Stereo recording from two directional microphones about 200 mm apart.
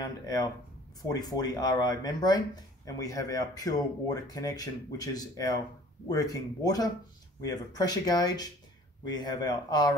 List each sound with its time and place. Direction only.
0.0 s speech: 15° left (ahead or behind)